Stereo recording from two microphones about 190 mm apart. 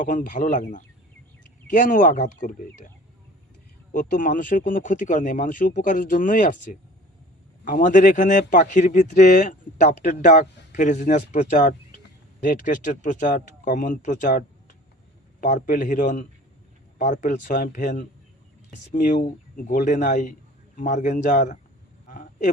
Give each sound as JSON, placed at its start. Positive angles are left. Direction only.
{"t": 0.0, "sound": "speech", "side_deg": 45}
{"t": 3.9, "sound": "a man's voice", "side_deg": 45}
{"t": 22.1, "sound": "a sound", "side_deg": 40}